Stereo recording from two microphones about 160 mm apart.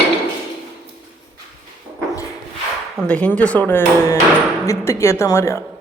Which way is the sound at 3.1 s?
10° left (ahead or behind).